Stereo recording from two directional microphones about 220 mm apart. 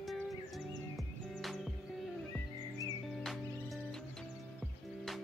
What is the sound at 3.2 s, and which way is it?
Music, centre (ahead or behind).